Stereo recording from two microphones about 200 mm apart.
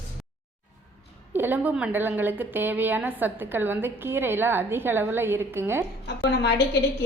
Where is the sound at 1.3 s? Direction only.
10° right (ahead or behind).